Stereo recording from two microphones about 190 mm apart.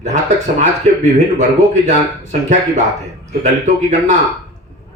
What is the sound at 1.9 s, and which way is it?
Speech, 40° right (ahead or behind).